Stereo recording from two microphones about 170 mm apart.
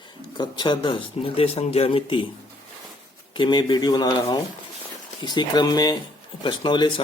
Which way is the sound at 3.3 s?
25° left (ahead or behind).